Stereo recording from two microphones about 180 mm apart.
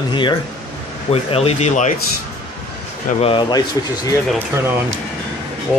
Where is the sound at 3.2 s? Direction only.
30° left (ahead or behind).